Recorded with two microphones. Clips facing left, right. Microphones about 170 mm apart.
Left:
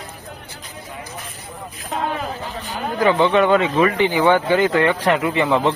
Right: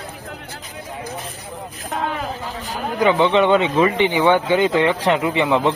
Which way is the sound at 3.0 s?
15° right (ahead or behind).